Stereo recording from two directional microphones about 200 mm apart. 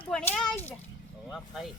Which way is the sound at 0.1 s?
5° left (ahead or behind).